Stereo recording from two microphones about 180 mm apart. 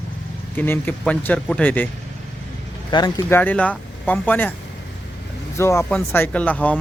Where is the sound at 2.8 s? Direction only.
25° left (ahead or behind).